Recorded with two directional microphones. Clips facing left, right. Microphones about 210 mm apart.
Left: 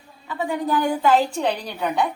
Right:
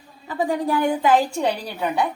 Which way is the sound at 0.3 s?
35° right (ahead or behind).